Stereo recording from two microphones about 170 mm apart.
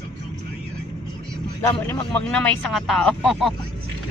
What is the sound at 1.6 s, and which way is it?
Speech, 10° left (ahead or behind).